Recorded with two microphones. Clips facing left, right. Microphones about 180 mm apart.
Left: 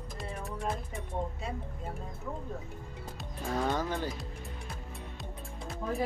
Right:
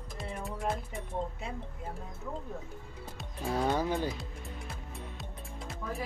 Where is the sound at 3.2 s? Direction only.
5° right (ahead or behind).